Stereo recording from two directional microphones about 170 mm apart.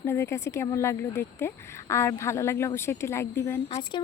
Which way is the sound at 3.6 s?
35° left (ahead or behind).